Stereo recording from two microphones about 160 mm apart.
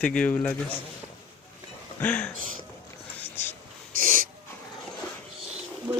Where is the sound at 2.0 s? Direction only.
10° left (ahead or behind).